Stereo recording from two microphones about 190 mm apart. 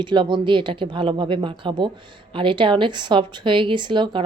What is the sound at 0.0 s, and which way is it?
A woman's voice, 25° right (ahead or behind).